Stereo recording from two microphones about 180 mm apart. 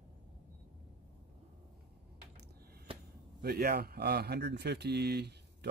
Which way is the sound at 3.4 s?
60° right (ahead or behind).